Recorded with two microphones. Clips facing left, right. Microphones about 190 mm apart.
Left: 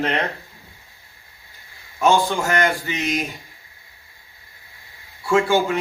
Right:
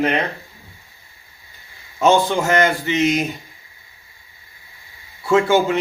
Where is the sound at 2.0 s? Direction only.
20° right (ahead or behind).